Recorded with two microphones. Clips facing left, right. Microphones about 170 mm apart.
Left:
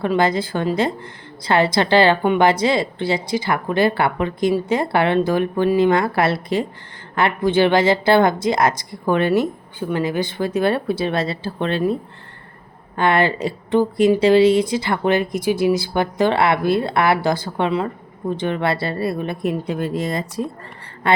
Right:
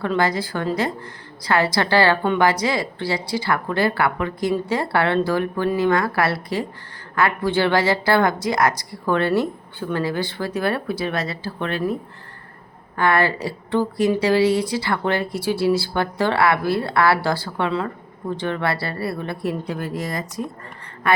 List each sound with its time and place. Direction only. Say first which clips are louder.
0.0 s a woman's voice: left 3 dB; 20° left (ahead or behind)
13.0 s a woman's voice: left 2 dB; 25° left (ahead or behind)